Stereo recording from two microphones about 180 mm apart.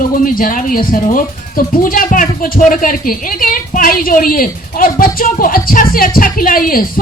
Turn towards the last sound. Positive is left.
turn(degrees=50)  # may be behind; listen again after turning